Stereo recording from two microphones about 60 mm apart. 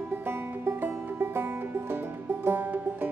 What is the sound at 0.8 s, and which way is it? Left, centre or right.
Music, right.